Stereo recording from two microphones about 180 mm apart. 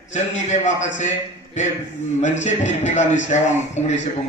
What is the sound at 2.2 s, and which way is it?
A man's voice, 40° left (ahead or behind).